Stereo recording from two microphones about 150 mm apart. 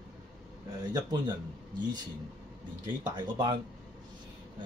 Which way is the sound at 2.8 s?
30° right (ahead or behind).